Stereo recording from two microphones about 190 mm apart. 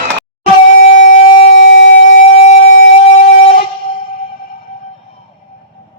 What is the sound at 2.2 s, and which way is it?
Siren, 40° left (ahead or behind).